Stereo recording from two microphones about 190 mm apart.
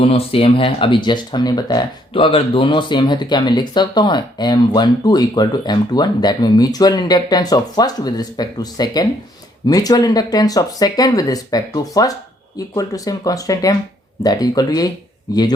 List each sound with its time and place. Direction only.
0.0 s speech: 30° left (ahead or behind)